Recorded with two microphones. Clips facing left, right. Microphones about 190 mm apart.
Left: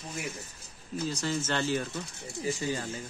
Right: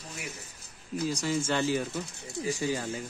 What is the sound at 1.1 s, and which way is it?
Speech, 10° right (ahead or behind).